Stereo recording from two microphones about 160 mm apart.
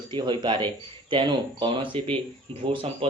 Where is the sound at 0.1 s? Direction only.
30° right (ahead or behind).